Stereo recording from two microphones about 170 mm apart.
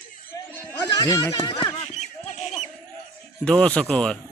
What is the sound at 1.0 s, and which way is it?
Speech, 20° left (ahead or behind).